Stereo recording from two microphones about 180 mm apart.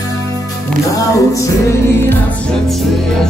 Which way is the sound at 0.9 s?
20° left (ahead or behind).